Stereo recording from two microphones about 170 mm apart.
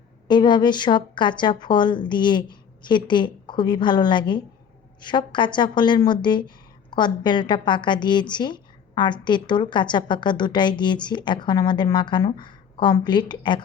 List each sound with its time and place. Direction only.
0.3 s a woman's voice: 25° left (ahead or behind)